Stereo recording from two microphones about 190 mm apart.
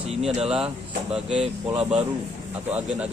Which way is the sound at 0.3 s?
35° right (ahead or behind).